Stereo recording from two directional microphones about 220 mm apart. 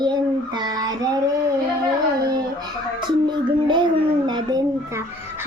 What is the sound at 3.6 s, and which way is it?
Speech, 20° right (ahead or behind).